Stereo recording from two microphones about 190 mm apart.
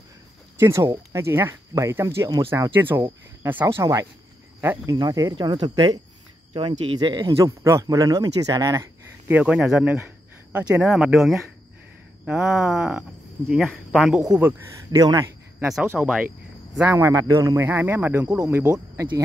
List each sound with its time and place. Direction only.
0.6 s speech: 15° right (ahead or behind)
9.3 s speech: 5° right (ahead or behind)
14.9 s speech: 20° right (ahead or behind)